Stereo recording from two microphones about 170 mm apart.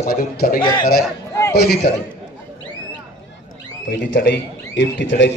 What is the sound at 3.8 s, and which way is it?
A man's voice, 85° left.